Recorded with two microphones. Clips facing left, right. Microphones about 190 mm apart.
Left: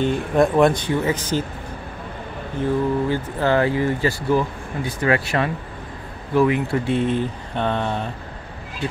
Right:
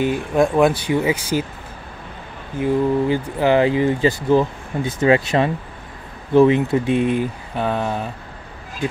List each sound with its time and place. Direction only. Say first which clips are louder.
0.0 s speech: even; 5° right (ahead or behind)
2.6 s speech: right 3 dB; 15° right (ahead or behind)